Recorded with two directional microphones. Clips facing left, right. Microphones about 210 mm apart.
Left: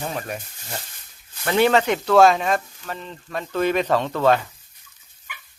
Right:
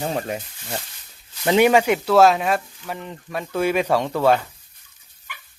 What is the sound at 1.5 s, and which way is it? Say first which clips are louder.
Speech: right 2 dB; 15° right (ahead or behind).